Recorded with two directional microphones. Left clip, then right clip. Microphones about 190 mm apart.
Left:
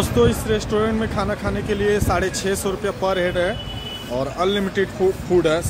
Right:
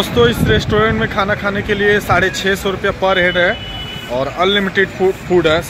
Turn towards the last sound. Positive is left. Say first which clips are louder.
# right 5 dB
turn(degrees=10)  # may be behind; listen again after turning